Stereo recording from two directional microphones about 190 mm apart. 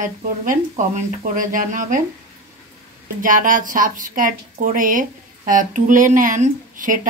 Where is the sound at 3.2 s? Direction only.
45° right (ahead or behind).